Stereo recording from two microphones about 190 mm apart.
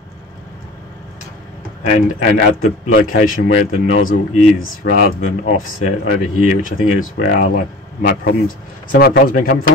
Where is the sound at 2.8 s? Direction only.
45° left (ahead or behind).